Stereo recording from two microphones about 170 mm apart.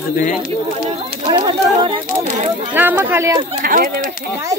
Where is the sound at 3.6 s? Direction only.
55° right (ahead or behind).